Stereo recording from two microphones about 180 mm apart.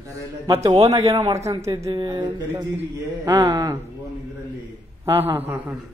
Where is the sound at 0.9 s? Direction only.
15° right (ahead or behind).